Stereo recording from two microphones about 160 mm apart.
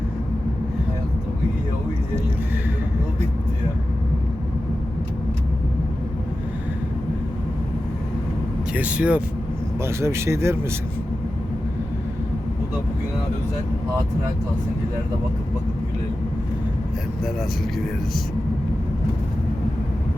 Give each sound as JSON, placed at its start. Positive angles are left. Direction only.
{"t": 8.7, "sound": "speech", "side_deg": -10}